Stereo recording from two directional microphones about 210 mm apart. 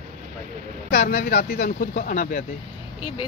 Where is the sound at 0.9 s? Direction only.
50° left (ahead or behind).